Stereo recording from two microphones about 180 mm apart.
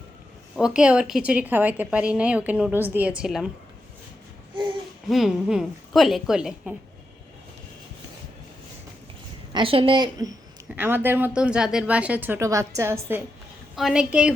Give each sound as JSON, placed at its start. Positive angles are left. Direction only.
{"t": 0.5, "sound": "a woman's voice", "side_deg": -5}
{"t": 5.0, "sound": "a woman's voice", "side_deg": 0}
{"t": 9.5, "sound": "a woman's voice", "side_deg": -30}
{"t": 10.8, "sound": "a woman's voice", "side_deg": -10}